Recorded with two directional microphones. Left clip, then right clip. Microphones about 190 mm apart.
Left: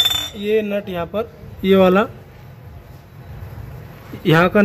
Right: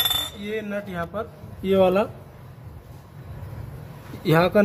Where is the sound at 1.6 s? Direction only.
25° left (ahead or behind).